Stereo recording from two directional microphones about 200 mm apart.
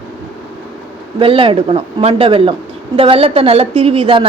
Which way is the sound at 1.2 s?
25° right (ahead or behind).